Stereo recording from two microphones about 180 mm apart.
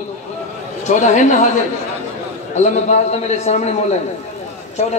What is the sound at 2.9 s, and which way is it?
Speech, 40° left (ahead or behind).